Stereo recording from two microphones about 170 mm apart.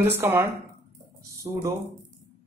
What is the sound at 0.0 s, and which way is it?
Speech, 15° right (ahead or behind).